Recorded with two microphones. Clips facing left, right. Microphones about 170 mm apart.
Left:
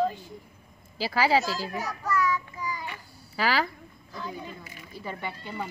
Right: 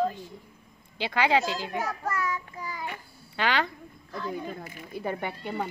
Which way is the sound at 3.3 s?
5° left (ahead or behind).